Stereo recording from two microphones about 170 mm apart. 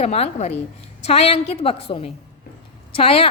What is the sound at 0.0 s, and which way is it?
A woman's voice, 40° left (ahead or behind).